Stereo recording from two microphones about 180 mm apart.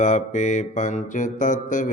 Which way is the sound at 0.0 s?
40° left (ahead or behind).